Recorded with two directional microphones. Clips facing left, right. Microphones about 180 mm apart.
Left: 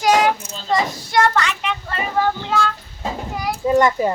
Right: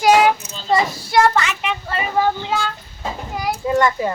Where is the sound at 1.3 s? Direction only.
10° right (ahead or behind).